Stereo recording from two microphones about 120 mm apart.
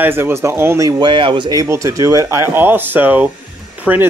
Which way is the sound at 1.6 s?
25° right (ahead or behind).